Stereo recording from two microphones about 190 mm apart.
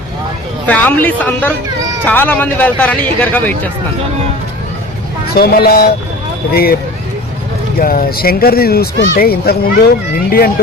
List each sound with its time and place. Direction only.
0.7 s speech: 10° left (ahead or behind)
5.3 s a child's voice: 55° left (ahead or behind)
7.8 s a child's voice: 50° left (ahead or behind)